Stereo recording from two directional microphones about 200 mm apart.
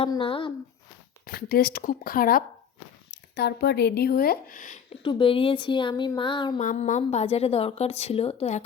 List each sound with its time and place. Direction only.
0.0 s speech: 25° left (ahead or behind)
1.3 s speech: 45° left (ahead or behind)
5.0 s speech: 25° left (ahead or behind)
6.6 s a woman's voice: 40° left (ahead or behind)